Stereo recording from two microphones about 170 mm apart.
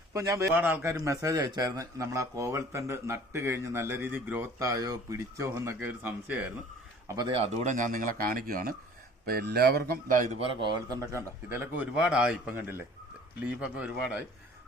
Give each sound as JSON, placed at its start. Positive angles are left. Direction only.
{"t": 0.1, "sound": "a man's voice", "side_deg": -20}
{"t": 7.1, "sound": "a man's voice", "side_deg": -25}
{"t": 10.4, "sound": "a man's voice", "side_deg": -25}